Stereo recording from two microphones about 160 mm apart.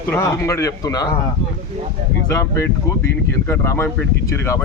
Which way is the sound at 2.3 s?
20° left (ahead or behind).